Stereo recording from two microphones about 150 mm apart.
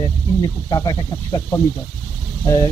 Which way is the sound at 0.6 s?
25° left (ahead or behind).